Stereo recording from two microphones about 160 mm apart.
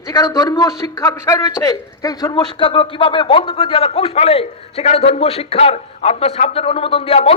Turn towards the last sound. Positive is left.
turn(degrees=40)  # may be behind; listen again after turning